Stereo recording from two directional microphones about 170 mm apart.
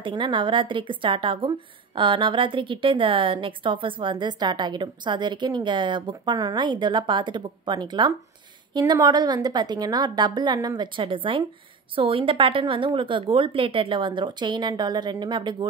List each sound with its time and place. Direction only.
0.0 s a woman's voice: 30° right (ahead or behind)